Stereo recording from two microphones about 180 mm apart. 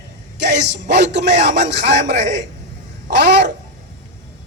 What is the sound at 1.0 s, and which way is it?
A man's voice, 75° right (ahead or behind).